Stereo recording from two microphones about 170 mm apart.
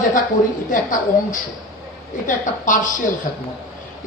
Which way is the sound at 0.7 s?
50° left (ahead or behind).